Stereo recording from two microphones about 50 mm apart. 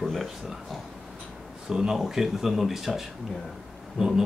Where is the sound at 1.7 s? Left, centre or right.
Centre.